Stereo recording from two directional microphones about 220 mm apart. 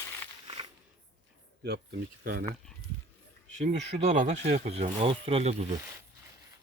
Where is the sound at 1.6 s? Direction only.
50° right (ahead or behind).